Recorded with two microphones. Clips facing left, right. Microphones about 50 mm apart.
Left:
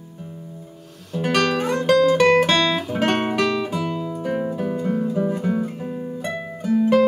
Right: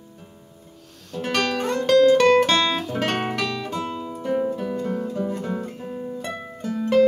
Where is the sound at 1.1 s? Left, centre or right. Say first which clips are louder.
Left 4 dB; centre.